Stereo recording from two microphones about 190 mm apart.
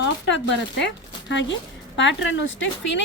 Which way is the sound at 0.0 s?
70° left (ahead or behind).